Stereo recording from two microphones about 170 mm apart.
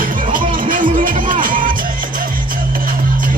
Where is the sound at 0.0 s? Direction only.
55° right (ahead or behind).